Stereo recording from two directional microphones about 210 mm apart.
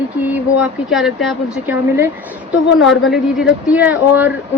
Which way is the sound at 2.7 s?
70° left (ahead or behind).